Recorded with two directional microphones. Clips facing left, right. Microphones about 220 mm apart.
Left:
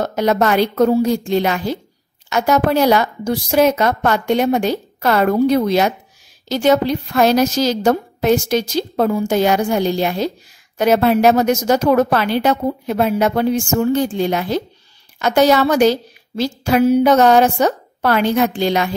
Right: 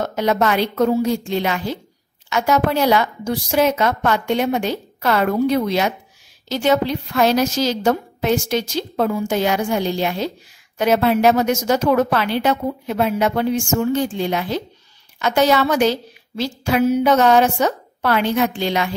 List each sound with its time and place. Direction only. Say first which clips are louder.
0.0 s a woman's voice: left 2 dB; 40° left (ahead or behind)